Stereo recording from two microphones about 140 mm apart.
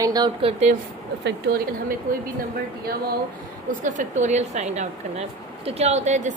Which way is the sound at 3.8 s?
60° right (ahead or behind).